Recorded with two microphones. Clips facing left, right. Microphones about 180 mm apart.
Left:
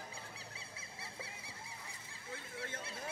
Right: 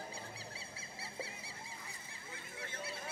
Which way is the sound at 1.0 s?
25° right (ahead or behind).